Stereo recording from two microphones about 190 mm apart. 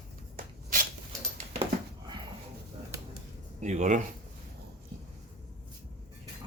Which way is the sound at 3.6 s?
40° right (ahead or behind).